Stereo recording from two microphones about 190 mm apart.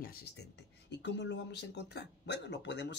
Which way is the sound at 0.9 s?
65° left (ahead or behind).